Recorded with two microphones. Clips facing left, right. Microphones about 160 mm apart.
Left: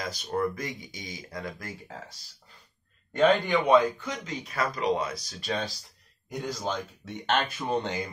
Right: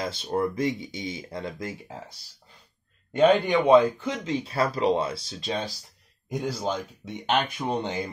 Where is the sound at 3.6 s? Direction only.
25° right (ahead or behind).